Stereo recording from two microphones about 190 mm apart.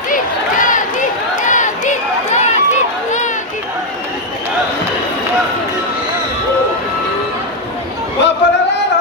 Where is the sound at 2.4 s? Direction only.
40° left (ahead or behind).